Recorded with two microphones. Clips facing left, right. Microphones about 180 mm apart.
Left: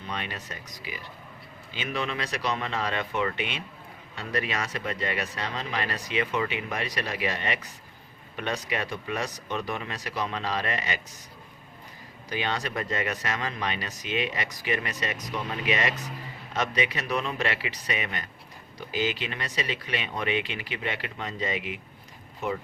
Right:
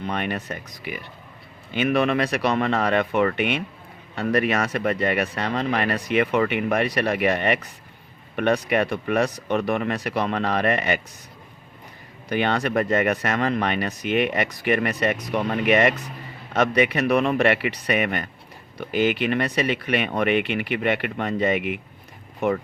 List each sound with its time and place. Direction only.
0.0 s speech: 60° right (ahead or behind)
12.3 s speech: 60° right (ahead or behind)